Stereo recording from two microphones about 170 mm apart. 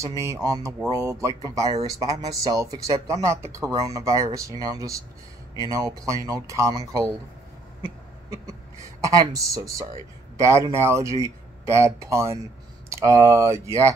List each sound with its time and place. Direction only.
0.0 s a man's voice: 20° right (ahead or behind)
7.8 s cough: 20° right (ahead or behind)
9.0 s a man's voice: 20° right (ahead or behind)